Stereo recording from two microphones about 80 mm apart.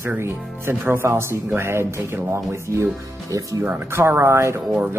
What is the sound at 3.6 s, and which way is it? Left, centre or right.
Speech, right.